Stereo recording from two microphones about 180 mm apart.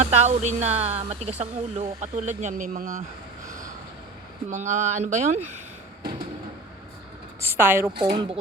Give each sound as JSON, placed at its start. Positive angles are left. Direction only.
{"t": 0.0, "sound": "speech", "side_deg": -40}
{"t": 4.4, "sound": "speech", "side_deg": -40}
{"t": 7.4, "sound": "a woman's voice", "side_deg": -10}
{"t": 8.1, "sound": "speech", "side_deg": -25}